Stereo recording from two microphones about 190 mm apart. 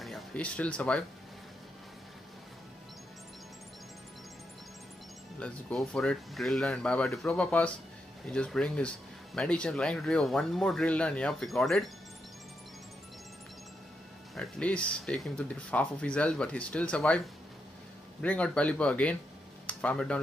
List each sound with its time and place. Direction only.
0.0 s speech: 5° left (ahead or behind)
5.4 s speech: 5° left (ahead or behind)
14.3 s speech: 5° left (ahead or behind)
18.2 s speech: 5° left (ahead or behind)